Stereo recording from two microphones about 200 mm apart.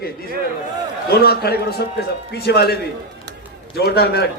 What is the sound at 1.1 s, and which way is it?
A man's voice, 50° left (ahead or behind).